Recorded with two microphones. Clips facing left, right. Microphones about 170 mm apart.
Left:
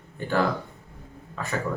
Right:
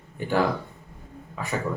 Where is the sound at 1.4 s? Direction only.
10° right (ahead or behind).